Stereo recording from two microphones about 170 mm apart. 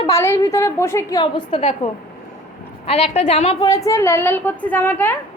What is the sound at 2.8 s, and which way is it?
Speech, 35° left (ahead or behind).